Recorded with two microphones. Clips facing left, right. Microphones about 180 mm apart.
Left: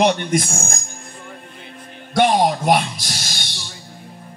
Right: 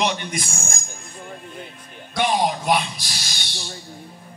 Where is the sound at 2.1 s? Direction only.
55° left (ahead or behind).